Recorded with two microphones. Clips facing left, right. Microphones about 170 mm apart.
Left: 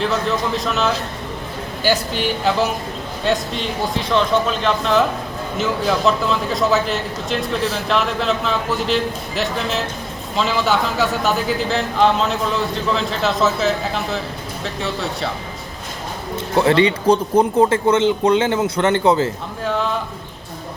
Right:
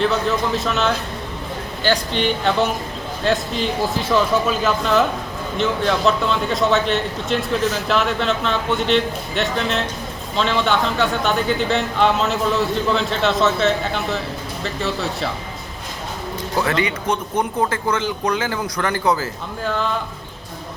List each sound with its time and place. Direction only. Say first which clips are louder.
0.0 s speech: right 1 dB; centre (ahead or behind)
16.6 s speech: left 6 dB; 30° left (ahead or behind)
19.6 s speech: left 1 dB; centre (ahead or behind)